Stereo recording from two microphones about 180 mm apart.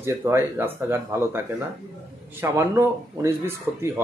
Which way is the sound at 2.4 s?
15° right (ahead or behind).